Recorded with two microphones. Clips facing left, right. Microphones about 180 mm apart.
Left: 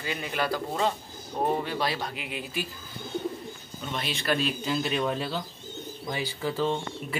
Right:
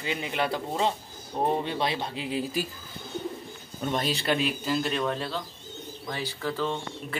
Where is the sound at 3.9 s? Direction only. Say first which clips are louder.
Right 4 dB; 40° right (ahead or behind).